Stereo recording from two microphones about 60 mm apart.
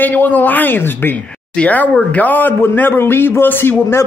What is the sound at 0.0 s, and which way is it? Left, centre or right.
Speech, left.